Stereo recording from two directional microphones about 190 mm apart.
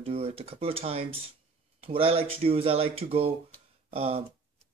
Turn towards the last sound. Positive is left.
turn(degrees=-30)  # may be behind; listen again after turning